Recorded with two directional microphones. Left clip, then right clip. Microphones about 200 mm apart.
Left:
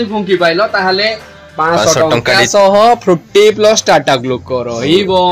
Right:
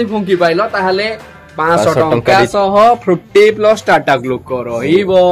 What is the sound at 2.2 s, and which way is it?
Speech, 45° left (ahead or behind).